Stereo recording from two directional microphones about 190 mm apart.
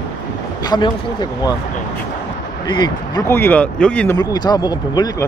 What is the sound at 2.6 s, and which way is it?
Speech, 25° left (ahead or behind).